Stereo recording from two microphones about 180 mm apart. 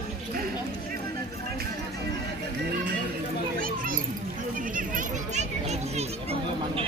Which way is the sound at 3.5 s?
50° right (ahead or behind).